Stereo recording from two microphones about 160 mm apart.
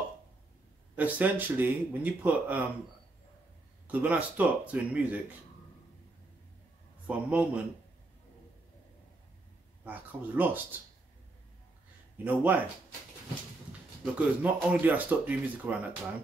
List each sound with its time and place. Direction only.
0.9 s speech: 10° right (ahead or behind)
3.8 s speech: 10° right (ahead or behind)
7.1 s speech: 10° right (ahead or behind)
9.8 s speech: 10° right (ahead or behind)
12.3 s speech: 10° right (ahead or behind)
14.1 s speech: 10° right (ahead or behind)